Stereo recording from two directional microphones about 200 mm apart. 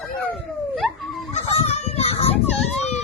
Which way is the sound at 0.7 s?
Centre (ahead or behind).